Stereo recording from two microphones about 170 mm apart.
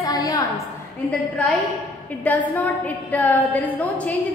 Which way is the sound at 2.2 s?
10° left (ahead or behind).